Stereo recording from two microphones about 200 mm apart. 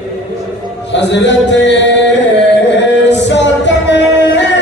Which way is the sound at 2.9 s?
60° left (ahead or behind).